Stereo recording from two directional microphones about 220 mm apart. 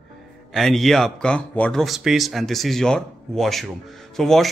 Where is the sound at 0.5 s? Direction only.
Centre (ahead or behind).